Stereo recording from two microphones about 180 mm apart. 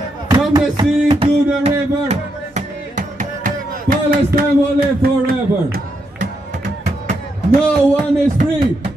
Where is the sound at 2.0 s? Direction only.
40° right (ahead or behind).